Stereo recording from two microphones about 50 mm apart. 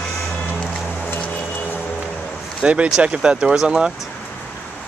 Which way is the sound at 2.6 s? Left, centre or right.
Right.